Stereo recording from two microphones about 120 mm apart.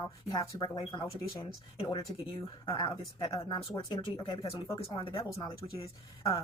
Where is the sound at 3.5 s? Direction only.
25° left (ahead or behind).